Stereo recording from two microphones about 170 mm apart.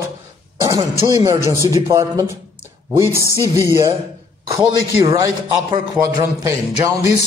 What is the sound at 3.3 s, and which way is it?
Music, 15° left (ahead or behind).